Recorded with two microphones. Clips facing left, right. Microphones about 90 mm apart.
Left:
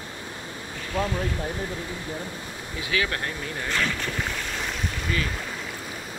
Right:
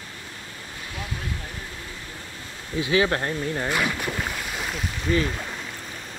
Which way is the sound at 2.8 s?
25° right (ahead or behind).